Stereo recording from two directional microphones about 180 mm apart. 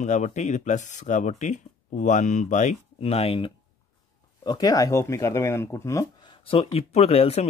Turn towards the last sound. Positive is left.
turn(degrees=35)  # may be behind; listen again after turning